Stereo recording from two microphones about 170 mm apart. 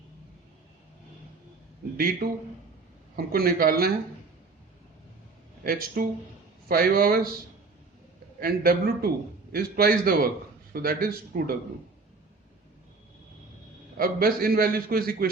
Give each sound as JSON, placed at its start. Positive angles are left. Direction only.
{"t": 2.0, "sound": "a man's voice", "side_deg": -60}
{"t": 5.6, "sound": "a man's voice", "side_deg": -60}
{"t": 8.4, "sound": "a man's voice", "side_deg": -60}
{"t": 13.9, "sound": "a man's voice", "side_deg": -60}